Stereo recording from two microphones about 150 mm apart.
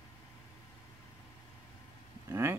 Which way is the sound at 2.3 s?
15° right (ahead or behind).